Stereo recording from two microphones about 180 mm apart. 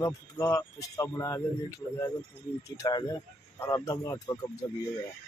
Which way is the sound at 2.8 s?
20° left (ahead or behind).